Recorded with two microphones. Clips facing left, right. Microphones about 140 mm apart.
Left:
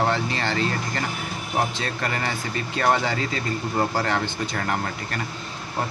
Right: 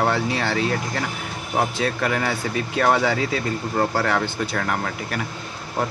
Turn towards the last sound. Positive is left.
turn(degrees=0)  # may be behind; listen again after turning